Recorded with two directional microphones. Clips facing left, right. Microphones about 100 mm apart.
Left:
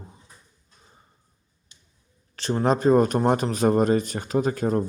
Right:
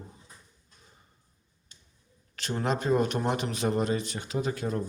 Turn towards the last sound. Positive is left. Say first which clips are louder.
# left 7 dB
turn(degrees=45)  # may be behind; listen again after turning